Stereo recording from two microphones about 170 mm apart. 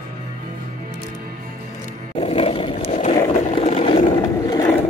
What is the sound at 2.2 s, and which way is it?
Vehicle, 35° left (ahead or behind).